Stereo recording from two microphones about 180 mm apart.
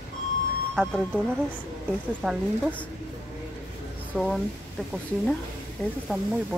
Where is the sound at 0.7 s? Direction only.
Centre (ahead or behind).